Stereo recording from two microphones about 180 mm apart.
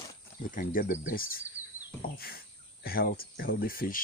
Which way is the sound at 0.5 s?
50° left (ahead or behind).